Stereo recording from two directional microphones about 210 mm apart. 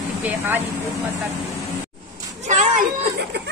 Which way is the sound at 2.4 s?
35° right (ahead or behind).